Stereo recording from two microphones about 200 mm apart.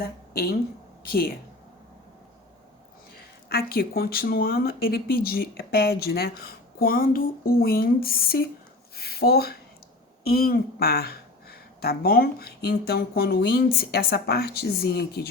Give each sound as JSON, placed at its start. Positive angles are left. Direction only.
{"t": 0.0, "sound": "a woman's voice", "side_deg": 50}
{"t": 3.5, "sound": "a woman's voice", "side_deg": 50}